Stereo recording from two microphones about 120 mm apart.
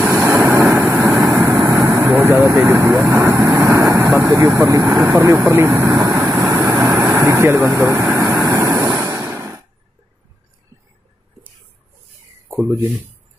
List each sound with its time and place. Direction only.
0.1 s vehicle: 20° right (ahead or behind)
3.0 s speech: 20° right (ahead or behind)
6.1 s vehicle: centre (ahead or behind)
6.6 s vehicle: 25° right (ahead or behind)
9.0 s a sound: 30° right (ahead or behind)
12.6 s speech: 20° right (ahead or behind)